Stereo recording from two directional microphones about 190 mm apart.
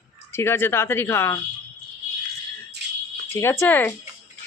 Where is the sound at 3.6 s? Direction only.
10° left (ahead or behind).